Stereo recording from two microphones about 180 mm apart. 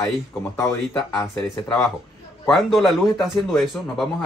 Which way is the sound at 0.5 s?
15° left (ahead or behind).